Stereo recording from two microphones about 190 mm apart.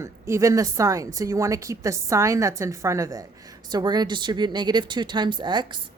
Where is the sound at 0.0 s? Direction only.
15° right (ahead or behind).